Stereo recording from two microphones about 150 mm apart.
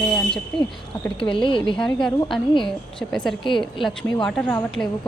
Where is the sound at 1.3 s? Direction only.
35° left (ahead or behind).